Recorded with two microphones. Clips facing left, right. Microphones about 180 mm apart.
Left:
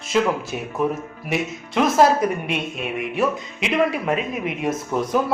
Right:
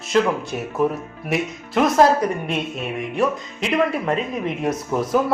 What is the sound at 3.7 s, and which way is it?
A woman's voice, centre (ahead or behind).